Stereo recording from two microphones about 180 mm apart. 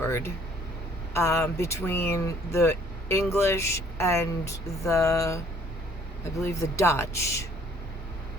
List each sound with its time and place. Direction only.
0.0 s speech: 15° left (ahead or behind)
6.4 s speech: 15° left (ahead or behind)